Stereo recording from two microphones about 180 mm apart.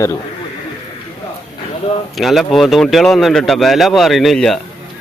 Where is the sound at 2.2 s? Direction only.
Centre (ahead or behind).